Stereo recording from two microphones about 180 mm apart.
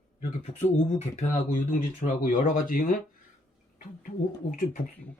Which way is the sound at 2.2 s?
50° left (ahead or behind).